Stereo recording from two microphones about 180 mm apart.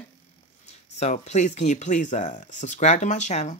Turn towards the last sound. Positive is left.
turn(degrees=40)  # may be behind; listen again after turning